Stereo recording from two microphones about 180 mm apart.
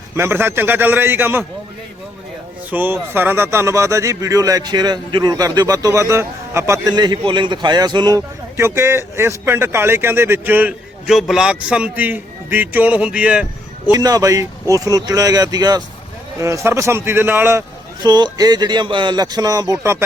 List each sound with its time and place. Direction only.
0.2 s speech: 15° right (ahead or behind)
2.6 s speech: 10° right (ahead or behind)
13.9 s speech: 20° right (ahead or behind)
18.0 s speech: 20° right (ahead or behind)